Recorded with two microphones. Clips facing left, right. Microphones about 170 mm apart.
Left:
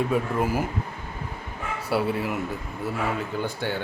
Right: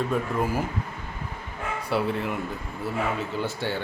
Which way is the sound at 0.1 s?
10° left (ahead or behind).